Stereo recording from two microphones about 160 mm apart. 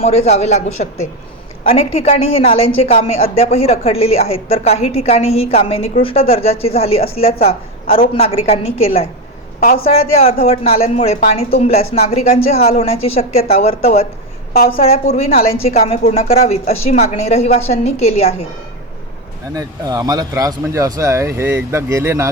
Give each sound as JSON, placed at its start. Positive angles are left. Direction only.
{"t": 0.0, "sound": "speech", "side_deg": 40}
{"t": 9.6, "sound": "speech", "side_deg": 65}
{"t": 9.9, "sound": "speech", "side_deg": 40}
{"t": 19.5, "sound": "speech", "side_deg": -25}